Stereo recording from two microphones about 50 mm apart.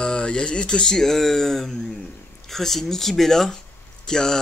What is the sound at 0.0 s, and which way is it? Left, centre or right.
Speech, centre.